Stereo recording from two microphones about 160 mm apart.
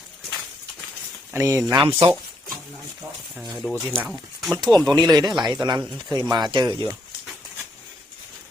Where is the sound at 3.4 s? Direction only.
Centre (ahead or behind).